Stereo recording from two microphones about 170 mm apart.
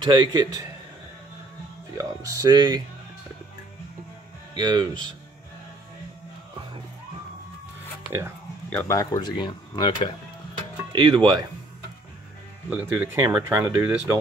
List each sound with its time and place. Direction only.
0.0 s a man's voice: 25° right (ahead or behind)
2.0 s speech: 20° right (ahead or behind)
4.6 s a man's voice: 25° right (ahead or behind)
8.6 s speech: 10° left (ahead or behind)
8.9 s speech: 25° left (ahead or behind)
10.9 s a man's voice: 25° right (ahead or behind)
12.6 s speech: 10° right (ahead or behind)